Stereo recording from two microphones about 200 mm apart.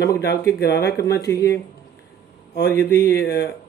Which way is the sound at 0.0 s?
55° left (ahead or behind).